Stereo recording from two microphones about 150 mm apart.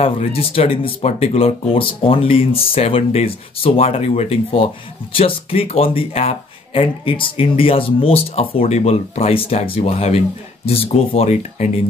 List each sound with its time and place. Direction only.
0.0 s speech: 40° left (ahead or behind)